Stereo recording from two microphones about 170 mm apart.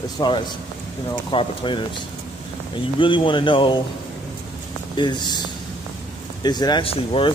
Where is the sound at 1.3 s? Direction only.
30° left (ahead or behind).